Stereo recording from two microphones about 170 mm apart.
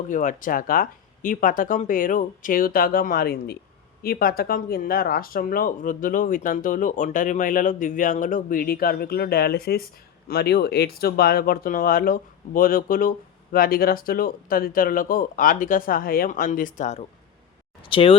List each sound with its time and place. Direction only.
0.1 s speech: 50° left (ahead or behind)
17.8 s speech: 30° left (ahead or behind)